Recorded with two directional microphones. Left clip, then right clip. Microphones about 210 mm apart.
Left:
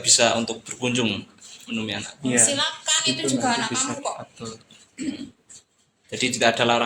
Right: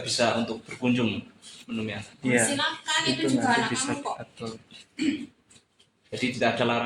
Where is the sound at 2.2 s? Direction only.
10° right (ahead or behind).